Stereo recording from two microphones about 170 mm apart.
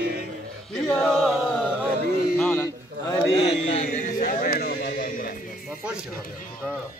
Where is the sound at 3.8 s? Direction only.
50° left (ahead or behind); by 4.9 s 70° left (ahead or behind).